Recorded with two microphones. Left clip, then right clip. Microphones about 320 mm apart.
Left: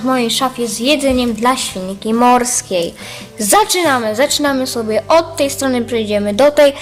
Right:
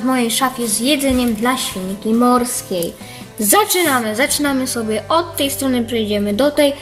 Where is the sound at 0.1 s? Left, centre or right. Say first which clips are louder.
Left 3 dB; centre.